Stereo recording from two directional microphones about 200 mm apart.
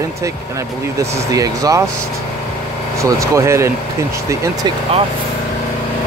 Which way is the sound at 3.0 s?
15° right (ahead or behind).